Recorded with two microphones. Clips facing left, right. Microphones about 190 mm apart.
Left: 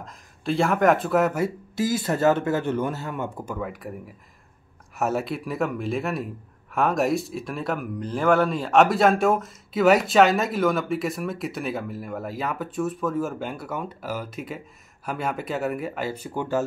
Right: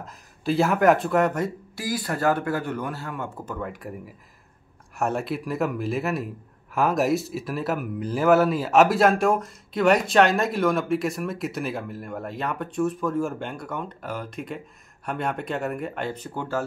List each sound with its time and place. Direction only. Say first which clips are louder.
0.0 s a man's voice: right 2 dB; centre (ahead or behind)
1.8 s speech: left 4 dB; 25° left (ahead or behind)
3.5 s a man's voice: left 1 dB; centre (ahead or behind)